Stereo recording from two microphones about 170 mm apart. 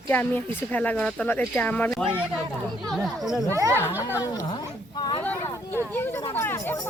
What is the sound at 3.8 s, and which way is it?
Speech, 15° left (ahead or behind).